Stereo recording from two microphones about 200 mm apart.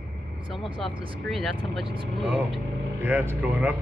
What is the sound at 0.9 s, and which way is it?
Speech, 25° right (ahead or behind).